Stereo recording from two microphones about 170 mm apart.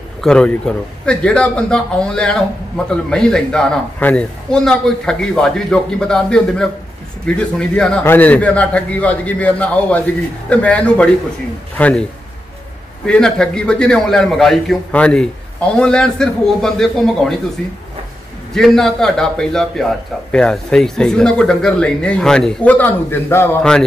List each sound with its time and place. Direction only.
0.2 s a man's voice: 5° left (ahead or behind)
18.5 s a man's voice: centre (ahead or behind)